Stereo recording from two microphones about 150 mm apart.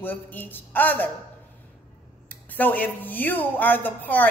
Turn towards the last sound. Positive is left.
turn(degrees=10)  # may be behind; listen again after turning